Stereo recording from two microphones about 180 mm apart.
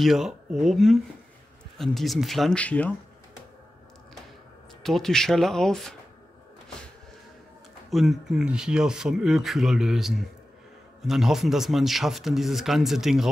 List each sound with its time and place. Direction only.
0.0 s speech: centre (ahead or behind)
4.8 s speech: centre (ahead or behind)
7.9 s speech: centre (ahead or behind)